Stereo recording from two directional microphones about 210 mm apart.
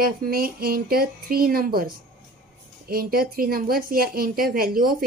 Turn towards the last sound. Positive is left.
turn(degrees=-45)  # may be behind; listen again after turning